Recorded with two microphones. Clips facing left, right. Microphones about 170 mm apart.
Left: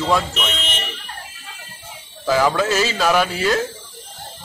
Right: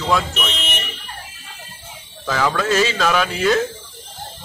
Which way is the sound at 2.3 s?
10° left (ahead or behind).